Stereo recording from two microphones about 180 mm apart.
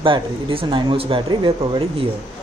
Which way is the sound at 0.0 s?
30° right (ahead or behind).